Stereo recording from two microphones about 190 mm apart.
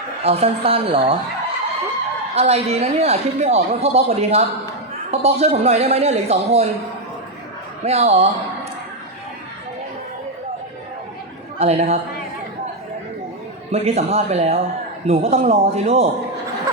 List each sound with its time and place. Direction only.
0.2 s speech: 35° right (ahead or behind)
2.3 s speech: 35° right (ahead or behind)
7.9 s speech: 35° right (ahead or behind)
11.6 s speech: 35° right (ahead or behind)
13.7 s speech: 35° right (ahead or behind)